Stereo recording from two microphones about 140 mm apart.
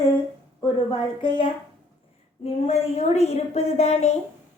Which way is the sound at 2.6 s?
50° left (ahead or behind).